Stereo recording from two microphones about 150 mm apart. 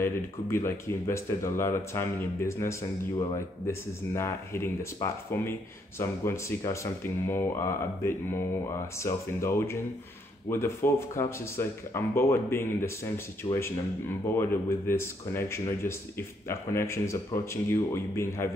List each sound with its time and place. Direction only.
0.0 s speech: 15° left (ahead or behind)